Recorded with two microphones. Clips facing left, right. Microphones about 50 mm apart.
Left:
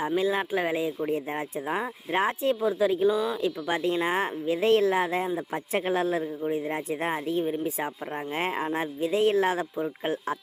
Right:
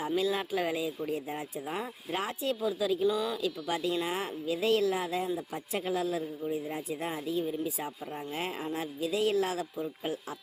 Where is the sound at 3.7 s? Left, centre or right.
Left.